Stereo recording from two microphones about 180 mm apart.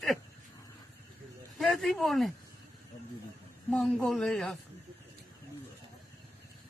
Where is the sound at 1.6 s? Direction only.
Centre (ahead or behind).